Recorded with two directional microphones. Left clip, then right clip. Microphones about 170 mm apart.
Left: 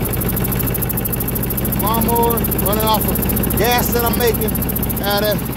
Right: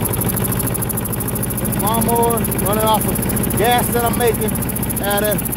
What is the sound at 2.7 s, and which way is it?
Vehicle, 25° right (ahead or behind).